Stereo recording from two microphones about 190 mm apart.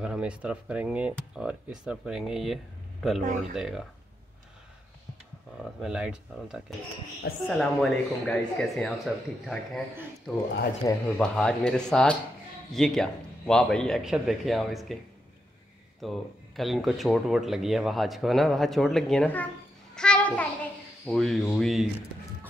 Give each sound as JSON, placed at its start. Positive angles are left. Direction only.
{"t": 0.0, "sound": "speech", "side_deg": -5}
{"t": 3.2, "sound": "speech", "side_deg": -45}
{"t": 3.5, "sound": "speech", "side_deg": 0}
{"t": 5.6, "sound": "speech", "side_deg": -5}
{"t": 10.8, "sound": "speech", "side_deg": 20}
{"t": 11.1, "sound": "speech", "side_deg": 5}
{"t": 16.0, "sound": "speech", "side_deg": 0}
{"t": 20.0, "sound": "a sound", "side_deg": 5}
{"t": 21.0, "sound": "speech", "side_deg": 5}